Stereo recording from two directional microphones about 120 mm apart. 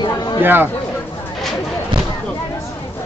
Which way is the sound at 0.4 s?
15° right (ahead or behind).